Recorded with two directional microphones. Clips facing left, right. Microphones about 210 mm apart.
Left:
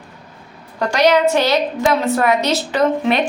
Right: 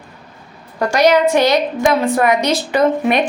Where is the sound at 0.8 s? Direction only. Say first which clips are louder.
Right 1 dB; 10° right (ahead or behind).